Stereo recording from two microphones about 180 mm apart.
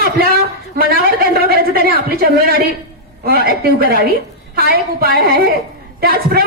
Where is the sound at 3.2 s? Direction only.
55° right (ahead or behind).